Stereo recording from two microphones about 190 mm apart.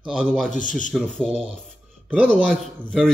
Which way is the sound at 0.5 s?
45° left (ahead or behind).